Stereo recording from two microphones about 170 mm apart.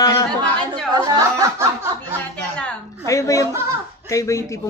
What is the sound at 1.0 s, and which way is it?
Snicker, 20° right (ahead or behind).